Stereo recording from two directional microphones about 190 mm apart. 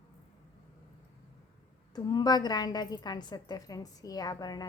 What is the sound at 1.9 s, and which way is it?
A woman's voice, 20° left (ahead or behind).